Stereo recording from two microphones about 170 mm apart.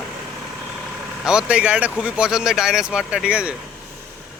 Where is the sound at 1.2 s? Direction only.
5° right (ahead or behind).